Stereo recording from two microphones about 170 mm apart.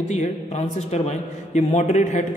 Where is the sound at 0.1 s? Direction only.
40° left (ahead or behind).